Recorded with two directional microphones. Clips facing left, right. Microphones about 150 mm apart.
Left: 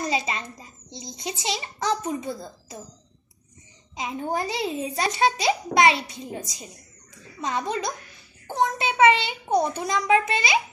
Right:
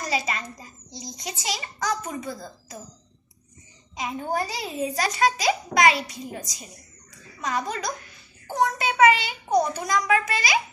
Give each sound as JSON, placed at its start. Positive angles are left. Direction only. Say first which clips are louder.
{"t": 0.1, "sound": "a child's voice", "louder": "left 1 dB", "side_deg": 25}
{"t": 3.9, "sound": "a child's voice", "louder": "even", "side_deg": 25}